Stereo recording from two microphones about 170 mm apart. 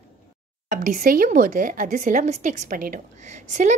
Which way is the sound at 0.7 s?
50° right (ahead or behind).